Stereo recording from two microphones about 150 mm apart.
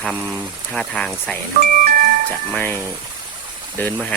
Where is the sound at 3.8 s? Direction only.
15° left (ahead or behind).